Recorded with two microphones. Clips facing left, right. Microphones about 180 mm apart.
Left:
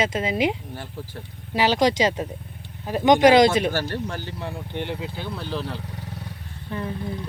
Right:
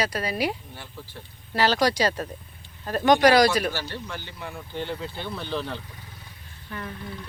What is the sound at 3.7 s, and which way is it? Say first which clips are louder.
Speech: left 6 dB; 50° left (ahead or behind).